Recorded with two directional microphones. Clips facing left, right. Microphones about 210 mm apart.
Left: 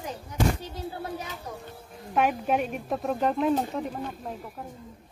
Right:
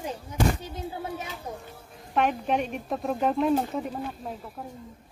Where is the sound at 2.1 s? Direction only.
5° left (ahead or behind).